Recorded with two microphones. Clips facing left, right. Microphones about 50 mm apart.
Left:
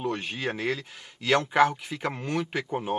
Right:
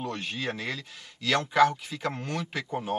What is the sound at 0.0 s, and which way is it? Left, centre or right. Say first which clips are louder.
Speech: left 3 dB; centre.